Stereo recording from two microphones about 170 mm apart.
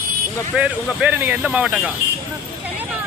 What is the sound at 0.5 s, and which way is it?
Speech, 5° right (ahead or behind).